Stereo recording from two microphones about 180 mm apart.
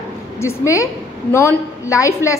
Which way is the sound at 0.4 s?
15° left (ahead or behind).